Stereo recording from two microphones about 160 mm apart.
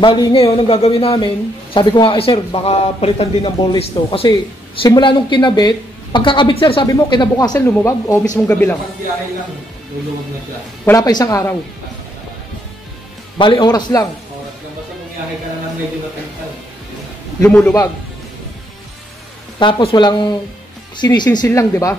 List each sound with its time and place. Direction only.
0.0 s a man's voice: 30° left (ahead or behind)
7.5 s speech: 15° left (ahead or behind)
10.9 s a woman's voice: 25° left (ahead or behind)
13.4 s a woman's voice: 30° left (ahead or behind)
17.4 s speech: 5° left (ahead or behind)
19.6 s a woman's voice: 35° left (ahead or behind); by 21.9 s 15° left (ahead or behind)